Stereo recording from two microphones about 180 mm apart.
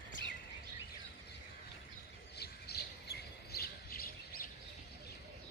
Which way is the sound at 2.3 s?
65° left (ahead or behind).